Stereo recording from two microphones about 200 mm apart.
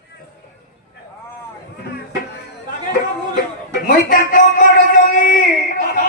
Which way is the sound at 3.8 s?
40° left (ahead or behind).